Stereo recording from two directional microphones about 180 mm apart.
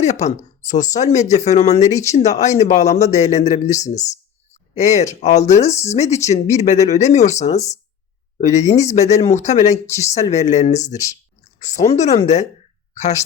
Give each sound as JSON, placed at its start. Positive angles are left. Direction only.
{"t": 0.0, "sound": "speech", "side_deg": 40}
{"t": 9.7, "sound": "speech", "side_deg": 15}
{"t": 10.2, "sound": "speech", "side_deg": 40}